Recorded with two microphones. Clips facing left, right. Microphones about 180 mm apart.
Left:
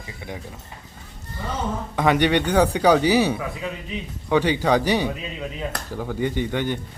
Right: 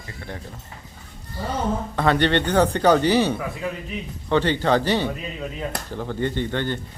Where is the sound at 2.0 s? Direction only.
15° left (ahead or behind).